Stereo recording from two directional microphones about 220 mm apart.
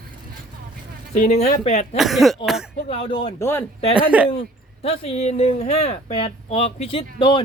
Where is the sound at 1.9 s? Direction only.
Centre (ahead or behind).